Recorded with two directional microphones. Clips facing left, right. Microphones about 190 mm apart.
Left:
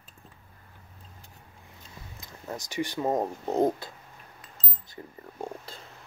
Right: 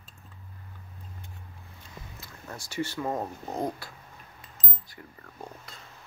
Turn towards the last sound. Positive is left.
turn(degrees=25)  # may be behind; listen again after turning